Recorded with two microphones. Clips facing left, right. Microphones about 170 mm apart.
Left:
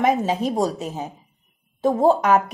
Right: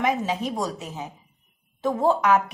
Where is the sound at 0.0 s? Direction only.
40° left (ahead or behind).